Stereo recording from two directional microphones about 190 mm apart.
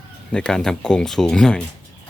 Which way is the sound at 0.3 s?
5° left (ahead or behind).